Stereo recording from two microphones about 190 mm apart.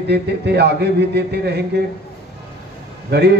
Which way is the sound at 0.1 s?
60° right (ahead or behind).